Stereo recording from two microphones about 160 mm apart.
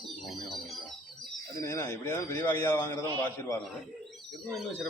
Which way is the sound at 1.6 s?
20° left (ahead or behind).